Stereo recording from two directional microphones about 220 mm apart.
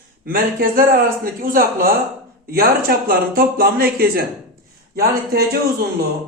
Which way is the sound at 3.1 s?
40° right (ahead or behind).